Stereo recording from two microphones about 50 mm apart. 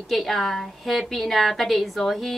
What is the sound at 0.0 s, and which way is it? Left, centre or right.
A woman's voice, centre.